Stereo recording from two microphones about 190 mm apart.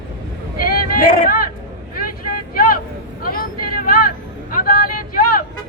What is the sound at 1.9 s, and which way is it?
Vehicle, 50° left (ahead or behind).